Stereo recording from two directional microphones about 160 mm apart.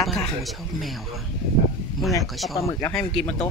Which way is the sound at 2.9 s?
5° left (ahead or behind).